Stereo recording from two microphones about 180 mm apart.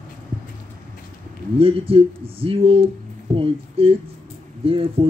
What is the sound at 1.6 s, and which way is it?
Speech, 30° right (ahead or behind).